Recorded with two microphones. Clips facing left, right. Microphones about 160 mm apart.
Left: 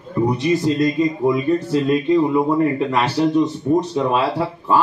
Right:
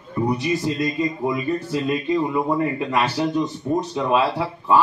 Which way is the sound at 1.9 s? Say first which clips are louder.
Left 6 dB; 20° left (ahead or behind).